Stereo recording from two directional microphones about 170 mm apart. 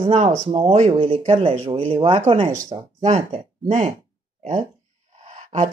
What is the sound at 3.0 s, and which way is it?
Speech, 35° right (ahead or behind).